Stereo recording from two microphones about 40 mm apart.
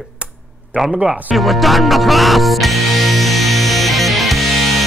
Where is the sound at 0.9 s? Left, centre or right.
Right.